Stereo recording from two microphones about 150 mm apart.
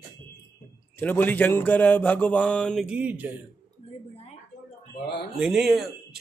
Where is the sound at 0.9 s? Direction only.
15° left (ahead or behind).